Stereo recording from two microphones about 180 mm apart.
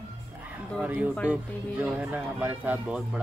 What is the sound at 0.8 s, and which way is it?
Speech, 10° right (ahead or behind).